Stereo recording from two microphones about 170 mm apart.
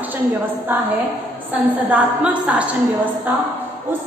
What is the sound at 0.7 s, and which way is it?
A woman's voice, 10° right (ahead or behind).